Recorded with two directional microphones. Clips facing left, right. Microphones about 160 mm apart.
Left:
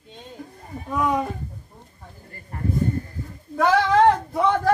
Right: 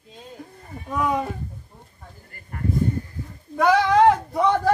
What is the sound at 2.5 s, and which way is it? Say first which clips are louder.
Speech: even; 30° left (ahead or behind).